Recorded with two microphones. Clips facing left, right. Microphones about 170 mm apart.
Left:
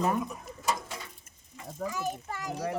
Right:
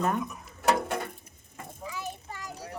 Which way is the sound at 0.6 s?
65° right (ahead or behind).